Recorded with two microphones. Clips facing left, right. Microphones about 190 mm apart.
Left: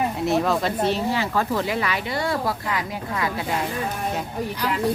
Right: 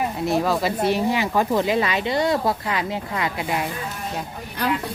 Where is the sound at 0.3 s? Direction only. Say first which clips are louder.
Right 1 dB; centre (ahead or behind); by 3.4 s 25° right (ahead or behind).